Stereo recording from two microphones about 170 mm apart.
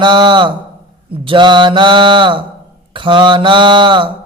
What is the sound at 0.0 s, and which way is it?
Speech, 25° right (ahead or behind).